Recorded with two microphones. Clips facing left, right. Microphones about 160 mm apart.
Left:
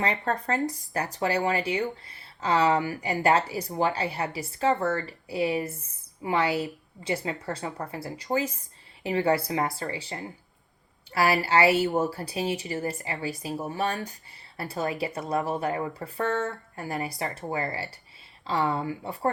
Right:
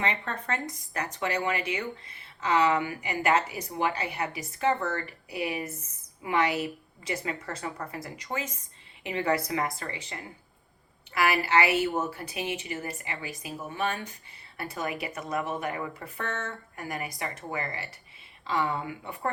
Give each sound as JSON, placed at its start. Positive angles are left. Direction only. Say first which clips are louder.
{"t": 0.0, "sound": "a woman's voice", "louder": "left 4 dB", "side_deg": 35}